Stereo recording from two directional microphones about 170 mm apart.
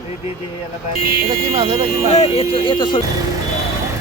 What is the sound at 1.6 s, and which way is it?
Speech, 30° right (ahead or behind).